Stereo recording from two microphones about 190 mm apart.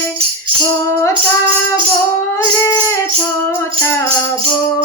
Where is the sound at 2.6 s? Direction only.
15° left (ahead or behind).